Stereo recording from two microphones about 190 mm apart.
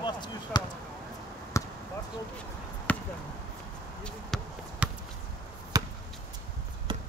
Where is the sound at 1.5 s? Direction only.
15° left (ahead or behind).